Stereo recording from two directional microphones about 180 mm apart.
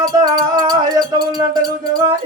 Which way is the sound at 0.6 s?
20° right (ahead or behind).